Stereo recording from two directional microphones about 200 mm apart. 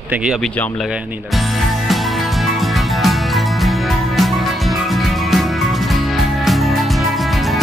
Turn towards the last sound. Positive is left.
turn(degrees=0)  # may be behind; listen again after turning